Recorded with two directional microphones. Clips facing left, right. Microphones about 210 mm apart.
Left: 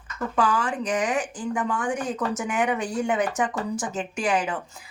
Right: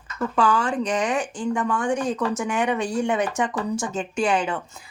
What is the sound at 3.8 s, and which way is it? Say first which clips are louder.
Speech: right 3 dB; 25° right (ahead or behind).